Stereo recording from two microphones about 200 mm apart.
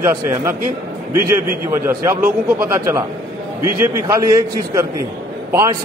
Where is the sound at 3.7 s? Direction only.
15° right (ahead or behind).